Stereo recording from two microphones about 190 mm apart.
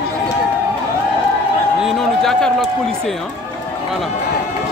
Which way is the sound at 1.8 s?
5° left (ahead or behind).